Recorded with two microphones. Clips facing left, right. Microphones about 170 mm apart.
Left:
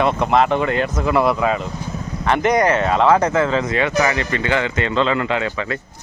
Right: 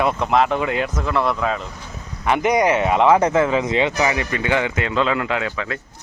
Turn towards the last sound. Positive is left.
turn(degrees=0)  # may be behind; listen again after turning